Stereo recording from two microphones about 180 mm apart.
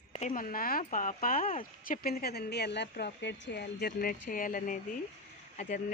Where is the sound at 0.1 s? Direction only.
45° left (ahead or behind).